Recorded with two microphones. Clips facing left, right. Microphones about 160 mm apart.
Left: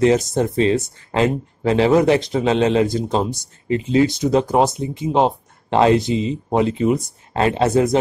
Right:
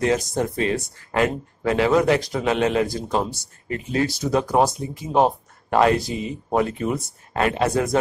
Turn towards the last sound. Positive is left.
turn(degrees=25)  # may be behind; listen again after turning